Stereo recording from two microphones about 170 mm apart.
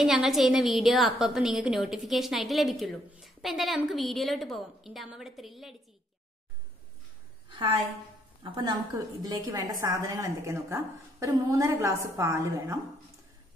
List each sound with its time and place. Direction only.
0.0 s a woman's voice: centre (ahead or behind)
7.4 s a sound: 30° right (ahead or behind)
8.4 s a woman's voice: 25° right (ahead or behind)